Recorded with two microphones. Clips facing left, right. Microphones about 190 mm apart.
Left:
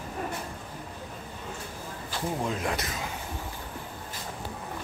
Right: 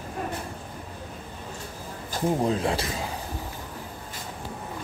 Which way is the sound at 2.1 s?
35° right (ahead or behind).